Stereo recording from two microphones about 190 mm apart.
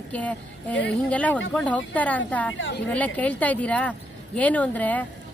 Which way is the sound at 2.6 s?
75° left (ahead or behind).